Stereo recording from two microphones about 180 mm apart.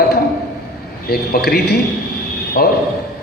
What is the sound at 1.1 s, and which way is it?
A man's voice, 55° left (ahead or behind).